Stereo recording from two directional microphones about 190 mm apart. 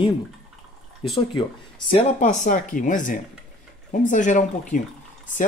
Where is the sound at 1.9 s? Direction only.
35° left (ahead or behind).